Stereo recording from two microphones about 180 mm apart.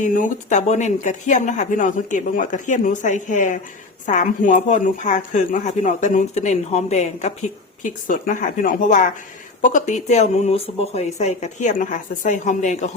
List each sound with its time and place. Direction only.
0.0 s speech: 45° left (ahead or behind)